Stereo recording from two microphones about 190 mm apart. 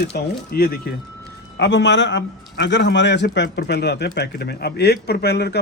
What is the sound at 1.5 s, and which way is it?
A man's voice, 65° left (ahead or behind).